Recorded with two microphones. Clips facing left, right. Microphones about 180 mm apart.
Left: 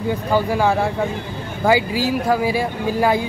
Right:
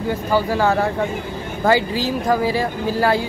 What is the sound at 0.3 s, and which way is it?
Speech, 15° left (ahead or behind).